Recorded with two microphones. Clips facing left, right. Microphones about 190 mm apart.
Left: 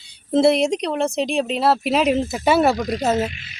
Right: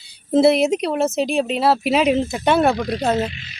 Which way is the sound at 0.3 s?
5° right (ahead or behind).